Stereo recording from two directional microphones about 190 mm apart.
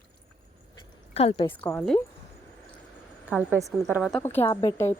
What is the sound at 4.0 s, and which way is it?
Speech, centre (ahead or behind).